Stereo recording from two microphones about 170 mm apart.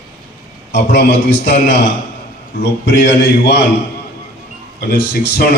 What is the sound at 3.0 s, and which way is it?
Speech, 65° left (ahead or behind).